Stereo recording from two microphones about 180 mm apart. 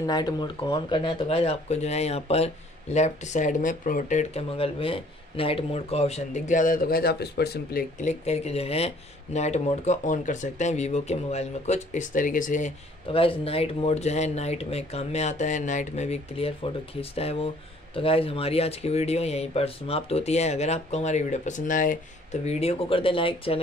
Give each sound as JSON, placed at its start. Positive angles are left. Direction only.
{"t": 0.0, "sound": "speech", "side_deg": 20}
{"t": 8.0, "sound": "speech", "side_deg": 40}
{"t": 13.1, "sound": "speech", "side_deg": 30}